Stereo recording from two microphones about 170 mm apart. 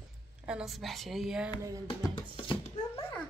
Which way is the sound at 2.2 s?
30° left (ahead or behind).